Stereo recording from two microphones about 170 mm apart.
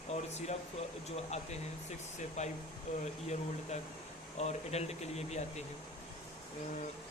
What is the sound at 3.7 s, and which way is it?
Speech, 40° left (ahead or behind).